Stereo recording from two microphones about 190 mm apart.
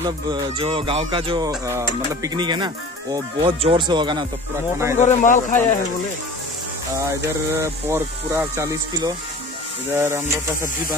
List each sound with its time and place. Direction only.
0.0 s speech: 25° right (ahead or behind)
5.0 s speech: 40° left (ahead or behind)
7.5 s speech: 15° right (ahead or behind)